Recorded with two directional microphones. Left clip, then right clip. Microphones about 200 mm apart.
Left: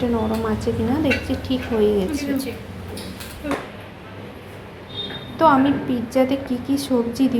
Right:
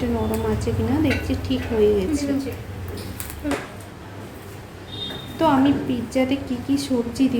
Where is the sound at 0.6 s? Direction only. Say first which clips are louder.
Left 1 dB; centre (ahead or behind).